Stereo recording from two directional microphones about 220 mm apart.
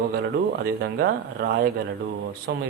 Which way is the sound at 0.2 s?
45° right (ahead or behind).